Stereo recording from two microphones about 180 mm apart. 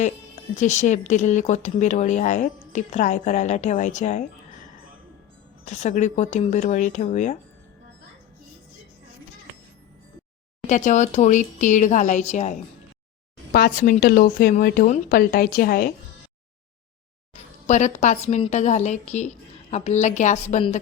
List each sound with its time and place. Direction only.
0.5 s speech: 40° left (ahead or behind)
5.6 s speech: 40° left (ahead or behind)
10.7 s speech: 40° left (ahead or behind)
13.5 s a woman's voice: 55° left (ahead or behind)
17.3 s speech: 40° left (ahead or behind)